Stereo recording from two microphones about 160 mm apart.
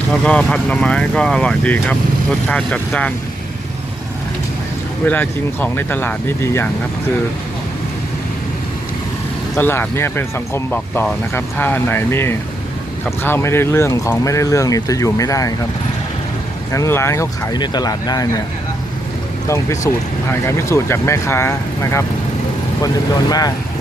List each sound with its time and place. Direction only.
0.1 s speech: 5° left (ahead or behind)
5.0 s speech: 10° left (ahead or behind)
9.6 s speech: 15° left (ahead or behind)
16.7 s speech: 20° left (ahead or behind)
19.5 s speech: 20° left (ahead or behind)